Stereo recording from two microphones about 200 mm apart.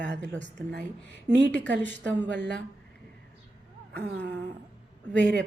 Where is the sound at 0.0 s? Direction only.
60° right (ahead or behind).